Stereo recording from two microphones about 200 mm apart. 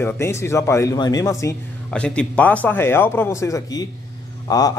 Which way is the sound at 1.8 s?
5° left (ahead or behind).